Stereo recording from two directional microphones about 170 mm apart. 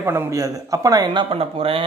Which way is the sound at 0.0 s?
15° right (ahead or behind).